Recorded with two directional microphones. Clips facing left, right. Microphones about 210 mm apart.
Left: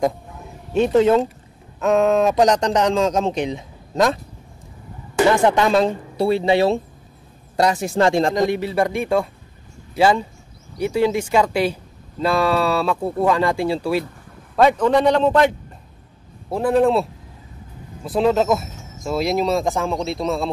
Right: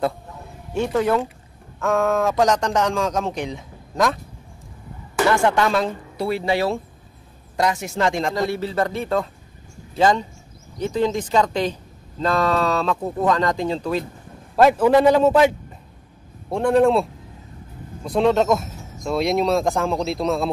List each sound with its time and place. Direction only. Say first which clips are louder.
0.7 s a man's voice: left 5 dB; 20° left (ahead or behind)
8.4 s speech: left 3 dB; 15° left (ahead or behind)
14.5 s a man's voice: right 1 dB; 5° right (ahead or behind)
16.4 s speech: even; 5° left (ahead or behind)